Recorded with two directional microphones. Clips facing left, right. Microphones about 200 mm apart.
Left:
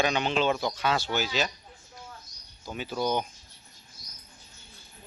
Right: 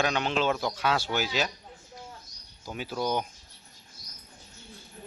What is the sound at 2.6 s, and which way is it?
Speech, 5° right (ahead or behind).